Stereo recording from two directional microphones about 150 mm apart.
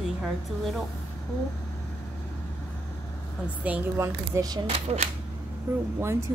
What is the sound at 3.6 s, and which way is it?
Speech, 15° right (ahead or behind).